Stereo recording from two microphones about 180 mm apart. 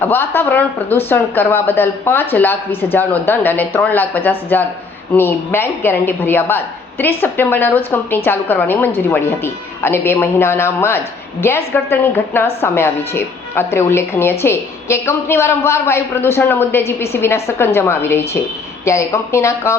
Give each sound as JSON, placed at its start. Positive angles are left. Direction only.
{"t": 0.0, "sound": "a woman's voice", "side_deg": 10}